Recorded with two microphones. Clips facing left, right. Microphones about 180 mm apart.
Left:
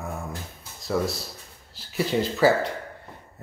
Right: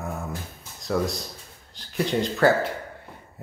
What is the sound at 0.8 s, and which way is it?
Speech, centre (ahead or behind).